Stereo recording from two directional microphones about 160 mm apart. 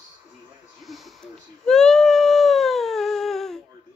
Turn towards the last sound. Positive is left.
turn(degrees=0)  # may be behind; listen again after turning